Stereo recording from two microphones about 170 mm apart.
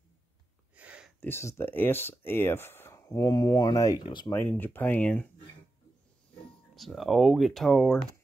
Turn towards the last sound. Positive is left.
turn(degrees=0)  # may be behind; listen again after turning